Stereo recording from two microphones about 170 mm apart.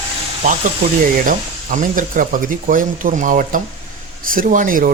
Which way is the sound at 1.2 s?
50° right (ahead or behind).